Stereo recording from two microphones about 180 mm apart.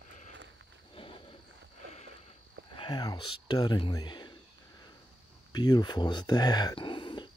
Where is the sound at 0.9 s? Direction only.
30° left (ahead or behind).